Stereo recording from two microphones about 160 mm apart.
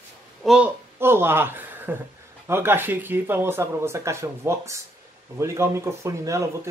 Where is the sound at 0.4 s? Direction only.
5° right (ahead or behind).